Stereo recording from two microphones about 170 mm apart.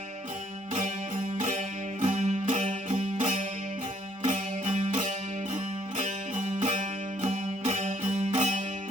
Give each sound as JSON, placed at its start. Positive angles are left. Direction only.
{"t": 1.4, "sound": "music", "side_deg": -45}